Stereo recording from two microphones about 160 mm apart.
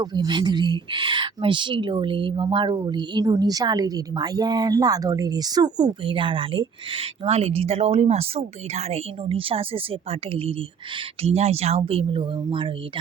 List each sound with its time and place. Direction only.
0.0 s speech: 25° right (ahead or behind)